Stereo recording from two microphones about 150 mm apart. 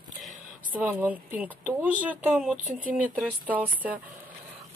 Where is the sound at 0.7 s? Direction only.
10° right (ahead or behind).